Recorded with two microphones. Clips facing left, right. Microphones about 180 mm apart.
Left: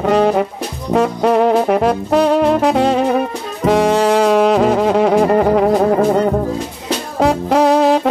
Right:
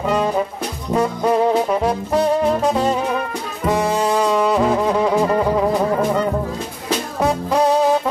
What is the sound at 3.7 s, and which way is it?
Music, 90° left.